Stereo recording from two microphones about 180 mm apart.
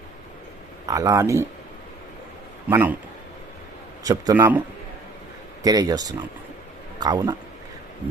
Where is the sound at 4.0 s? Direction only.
20° right (ahead or behind).